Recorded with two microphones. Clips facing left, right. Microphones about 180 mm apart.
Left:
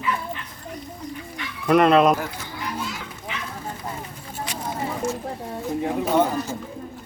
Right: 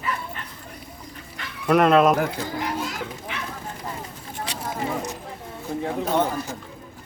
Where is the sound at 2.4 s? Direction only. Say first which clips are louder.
Right 4 dB; 50° right (ahead or behind).